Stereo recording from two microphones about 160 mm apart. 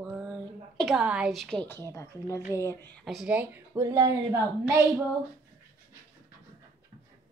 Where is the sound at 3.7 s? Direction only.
20° right (ahead or behind).